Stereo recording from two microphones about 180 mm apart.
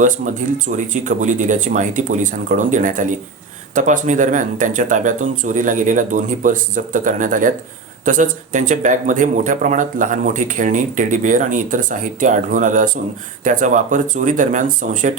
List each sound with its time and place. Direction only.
0.0 s speech: 45° right (ahead or behind)